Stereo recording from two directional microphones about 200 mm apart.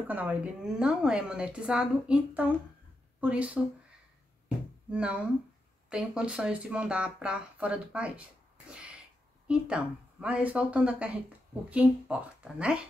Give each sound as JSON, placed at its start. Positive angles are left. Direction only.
{"t": 0.1, "sound": "a woman's voice", "side_deg": -10}
{"t": 4.9, "sound": "a woman's voice", "side_deg": -5}
{"t": 9.5, "sound": "a woman's voice", "side_deg": -5}